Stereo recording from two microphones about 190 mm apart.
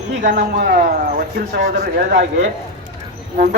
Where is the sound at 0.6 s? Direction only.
45° right (ahead or behind); by 2.5 s 65° right (ahead or behind).